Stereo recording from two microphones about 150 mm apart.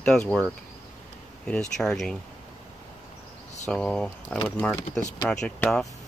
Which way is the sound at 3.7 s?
5° left (ahead or behind).